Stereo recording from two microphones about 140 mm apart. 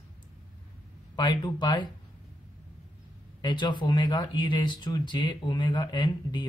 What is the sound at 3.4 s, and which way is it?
Speech, 30° left (ahead or behind).